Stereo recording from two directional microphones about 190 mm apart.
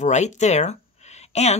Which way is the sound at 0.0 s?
40° left (ahead or behind).